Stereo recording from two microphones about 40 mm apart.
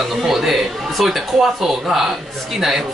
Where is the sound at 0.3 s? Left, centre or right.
Centre.